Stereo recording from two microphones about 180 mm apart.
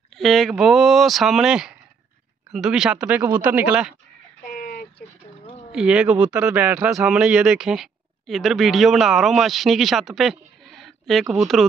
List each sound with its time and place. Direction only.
0.1 s speech: centre (ahead or behind)
4.5 s a sound: 55° left (ahead or behind)
5.7 s speech: 5° right (ahead or behind)